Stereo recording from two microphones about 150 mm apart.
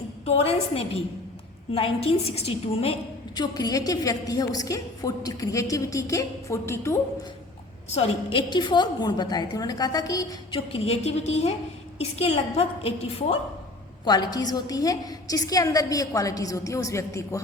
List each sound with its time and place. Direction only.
0.3 s a woman's voice: 40° left (ahead or behind)
3.3 s a woman's voice: 25° left (ahead or behind)
7.9 s a woman's voice: 40° left (ahead or behind)
10.7 s a woman's voice: 40° left (ahead or behind)
14.0 s a woman's voice: 30° left (ahead or behind)